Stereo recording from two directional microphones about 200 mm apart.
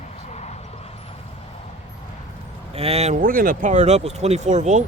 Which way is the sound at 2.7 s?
30° right (ahead or behind).